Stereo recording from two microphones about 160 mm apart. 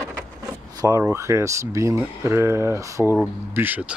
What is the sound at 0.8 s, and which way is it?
Speech, 20° right (ahead or behind).